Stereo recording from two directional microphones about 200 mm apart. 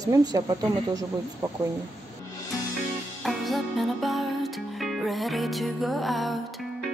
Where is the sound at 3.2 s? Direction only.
Centre (ahead or behind).